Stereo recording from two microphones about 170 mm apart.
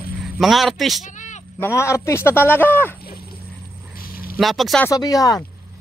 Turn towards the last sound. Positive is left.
turn(degrees=20)  # may be behind; listen again after turning